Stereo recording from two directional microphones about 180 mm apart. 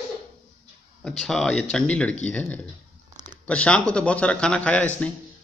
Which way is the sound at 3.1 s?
25° right (ahead or behind).